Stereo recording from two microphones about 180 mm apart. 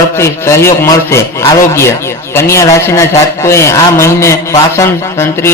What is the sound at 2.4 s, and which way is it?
A man's voice, 15° left (ahead or behind).